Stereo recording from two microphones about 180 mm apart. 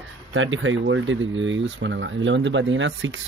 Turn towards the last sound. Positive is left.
turn(degrees=-90)